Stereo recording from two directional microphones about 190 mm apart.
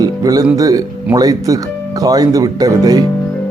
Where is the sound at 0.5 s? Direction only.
15° right (ahead or behind).